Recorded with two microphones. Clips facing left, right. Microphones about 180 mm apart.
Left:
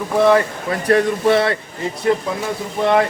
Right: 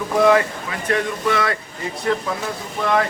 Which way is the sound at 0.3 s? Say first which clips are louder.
Left 3 dB; 35° left (ahead or behind).